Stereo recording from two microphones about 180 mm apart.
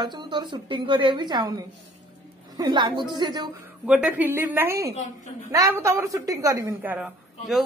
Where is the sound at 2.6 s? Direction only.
25° right (ahead or behind).